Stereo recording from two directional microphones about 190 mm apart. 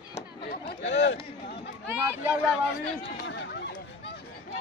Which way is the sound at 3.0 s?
65° left (ahead or behind).